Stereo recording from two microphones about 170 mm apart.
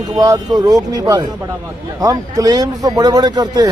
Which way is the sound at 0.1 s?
20° right (ahead or behind).